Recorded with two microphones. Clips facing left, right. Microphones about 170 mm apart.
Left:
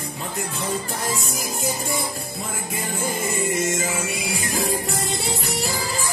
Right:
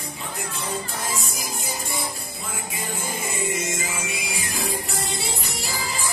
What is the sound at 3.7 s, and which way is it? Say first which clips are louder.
Music: left 5 dB; 50° left (ahead or behind).